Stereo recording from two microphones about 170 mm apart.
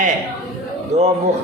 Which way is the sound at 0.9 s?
40° right (ahead or behind).